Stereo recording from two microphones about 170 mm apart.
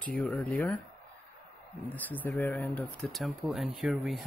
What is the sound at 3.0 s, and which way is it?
Speech, centre (ahead or behind).